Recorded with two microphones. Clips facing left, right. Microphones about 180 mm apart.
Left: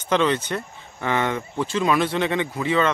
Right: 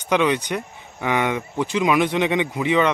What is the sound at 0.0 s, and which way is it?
Speech, 15° right (ahead or behind).